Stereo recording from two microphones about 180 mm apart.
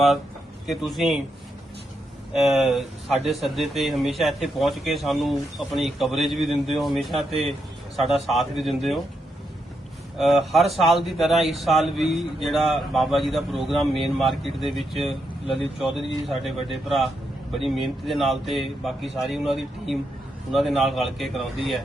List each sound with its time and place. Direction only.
0.7 s a man's voice: centre (ahead or behind)
2.3 s a man's voice: centre (ahead or behind)
10.2 s a man's voice: centre (ahead or behind)